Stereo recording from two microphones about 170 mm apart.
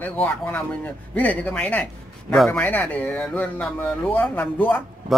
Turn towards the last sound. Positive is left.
turn(degrees=10)  # may be behind; listen again after turning